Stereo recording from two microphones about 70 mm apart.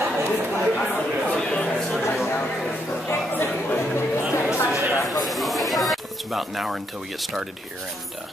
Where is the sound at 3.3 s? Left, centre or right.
Left.